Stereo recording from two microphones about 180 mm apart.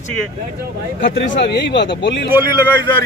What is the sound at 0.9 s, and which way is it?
Speech, 80° left.